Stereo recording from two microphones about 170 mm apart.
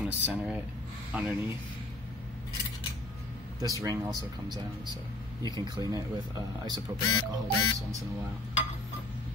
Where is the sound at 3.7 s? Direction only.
20° right (ahead or behind).